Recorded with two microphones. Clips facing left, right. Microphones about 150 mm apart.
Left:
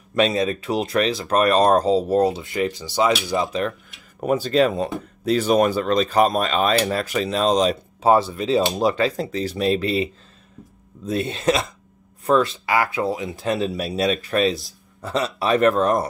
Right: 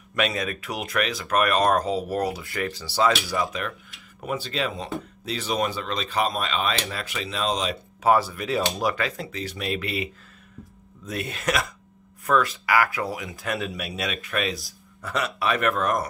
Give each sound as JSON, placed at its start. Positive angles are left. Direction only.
{"t": 0.1, "sound": "speech", "side_deg": 30}
{"t": 4.2, "sound": "speech", "side_deg": 45}
{"t": 8.0, "sound": "speech", "side_deg": 25}
{"t": 11.1, "sound": "speech", "side_deg": 30}